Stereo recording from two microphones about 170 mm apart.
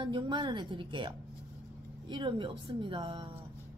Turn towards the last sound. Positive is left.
turn(degrees=-30)  # may be behind; listen again after turning